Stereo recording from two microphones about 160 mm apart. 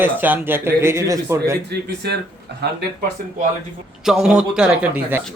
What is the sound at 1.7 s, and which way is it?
Speech, 90° right.